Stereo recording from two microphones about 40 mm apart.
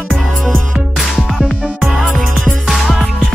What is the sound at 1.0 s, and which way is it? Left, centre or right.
Music, centre.